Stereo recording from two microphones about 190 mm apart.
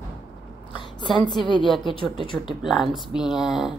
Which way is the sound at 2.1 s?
25° left (ahead or behind).